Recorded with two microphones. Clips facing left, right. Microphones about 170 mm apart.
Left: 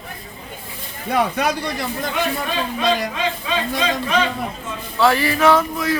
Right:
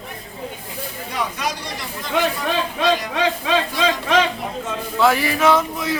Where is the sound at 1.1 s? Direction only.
60° left (ahead or behind).